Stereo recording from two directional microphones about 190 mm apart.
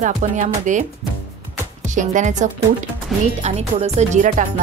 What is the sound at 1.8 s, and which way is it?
Speech, 40° right (ahead or behind).